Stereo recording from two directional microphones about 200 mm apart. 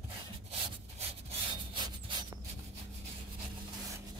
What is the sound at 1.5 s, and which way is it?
Rub, 25° right (ahead or behind).